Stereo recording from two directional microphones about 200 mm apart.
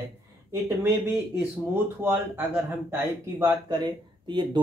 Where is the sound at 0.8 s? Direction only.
10° right (ahead or behind).